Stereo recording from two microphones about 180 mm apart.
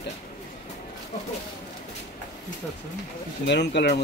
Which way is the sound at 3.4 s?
75° left (ahead or behind).